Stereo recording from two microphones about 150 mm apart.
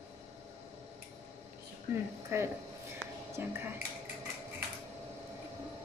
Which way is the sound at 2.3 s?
15° right (ahead or behind).